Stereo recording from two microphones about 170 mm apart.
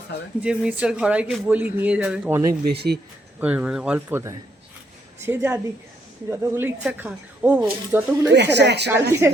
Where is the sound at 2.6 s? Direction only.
70° right (ahead or behind).